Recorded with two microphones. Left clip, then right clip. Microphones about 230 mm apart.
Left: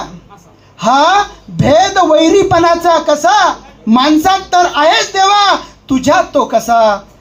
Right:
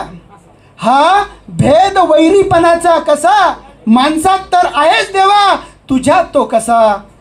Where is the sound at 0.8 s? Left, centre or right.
Right.